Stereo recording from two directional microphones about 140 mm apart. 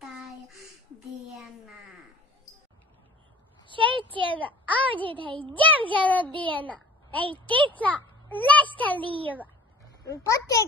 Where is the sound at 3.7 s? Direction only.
35° right (ahead or behind).